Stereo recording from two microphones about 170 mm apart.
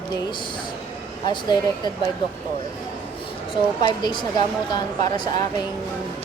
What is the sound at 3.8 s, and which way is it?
A woman's voice, 25° left (ahead or behind).